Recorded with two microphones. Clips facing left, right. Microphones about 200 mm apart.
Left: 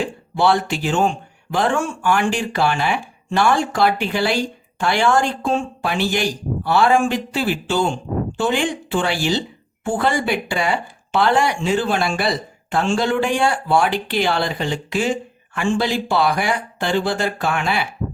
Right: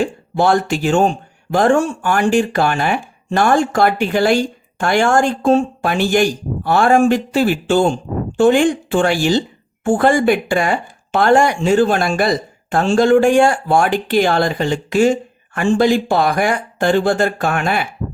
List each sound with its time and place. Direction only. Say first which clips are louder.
0.0 s speech: right 3 dB; 45° right (ahead or behind)